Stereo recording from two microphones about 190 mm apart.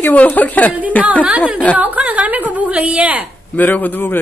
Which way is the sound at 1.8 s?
10° right (ahead or behind).